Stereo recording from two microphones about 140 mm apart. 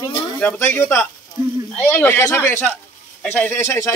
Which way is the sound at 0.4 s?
15° left (ahead or behind).